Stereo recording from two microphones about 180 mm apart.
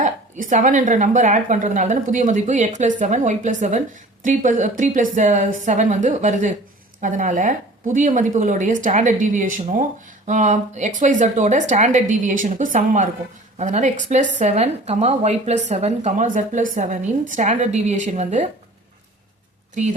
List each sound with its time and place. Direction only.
0.0 s a woman's voice: 45° right (ahead or behind)
19.7 s a woman's voice: 45° right (ahead or behind)